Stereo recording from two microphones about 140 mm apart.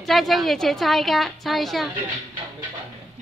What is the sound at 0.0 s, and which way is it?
A woman's voice, centre (ahead or behind).